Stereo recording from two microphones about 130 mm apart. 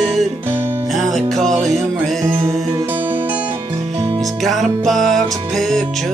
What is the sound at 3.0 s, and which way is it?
Music, 40° right (ahead or behind).